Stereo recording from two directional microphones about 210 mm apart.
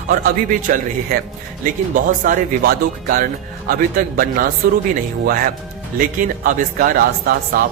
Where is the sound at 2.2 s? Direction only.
45° right (ahead or behind).